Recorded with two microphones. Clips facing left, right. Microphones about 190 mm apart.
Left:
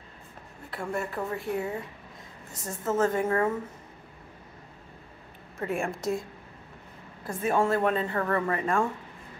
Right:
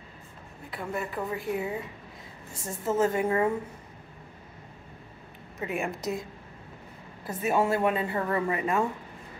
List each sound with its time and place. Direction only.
0.7 s speech: centre (ahead or behind)
2.5 s a woman's voice: 25° right (ahead or behind)
2.8 s speech: 10° right (ahead or behind)
5.6 s speech: 5° right (ahead or behind)
7.4 s speech: 10° right (ahead or behind)